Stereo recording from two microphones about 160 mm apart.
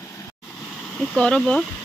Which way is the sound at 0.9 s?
5° left (ahead or behind).